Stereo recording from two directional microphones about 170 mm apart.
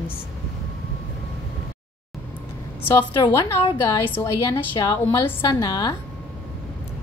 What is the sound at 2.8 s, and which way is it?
A woman's voice, 15° left (ahead or behind).